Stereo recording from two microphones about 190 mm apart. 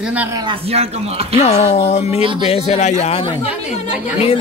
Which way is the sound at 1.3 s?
35° left (ahead or behind).